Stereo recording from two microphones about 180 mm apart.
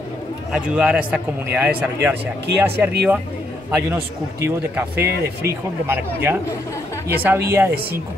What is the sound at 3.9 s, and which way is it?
A man's voice, 10° right (ahead or behind).